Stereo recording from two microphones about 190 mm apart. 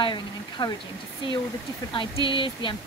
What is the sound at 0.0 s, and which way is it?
Speech, 25° left (ahead or behind).